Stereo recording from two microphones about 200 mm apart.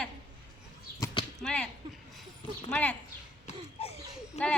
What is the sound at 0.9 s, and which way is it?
Basketball bounce, 15° left (ahead or behind).